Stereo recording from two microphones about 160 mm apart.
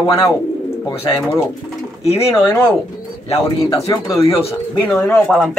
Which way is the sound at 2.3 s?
15° left (ahead or behind).